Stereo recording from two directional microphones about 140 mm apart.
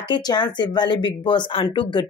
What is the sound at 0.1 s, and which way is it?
Speech, 30° left (ahead or behind).